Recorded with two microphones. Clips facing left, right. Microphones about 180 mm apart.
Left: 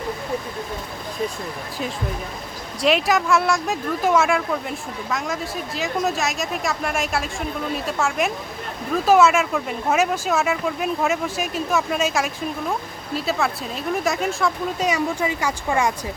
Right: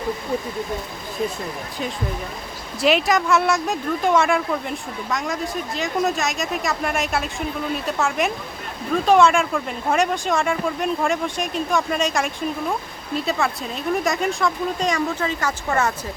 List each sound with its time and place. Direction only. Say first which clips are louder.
2.8 s speech: right 1 dB; centre (ahead or behind)